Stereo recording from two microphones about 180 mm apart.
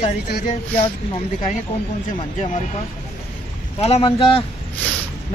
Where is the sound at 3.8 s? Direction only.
35° left (ahead or behind).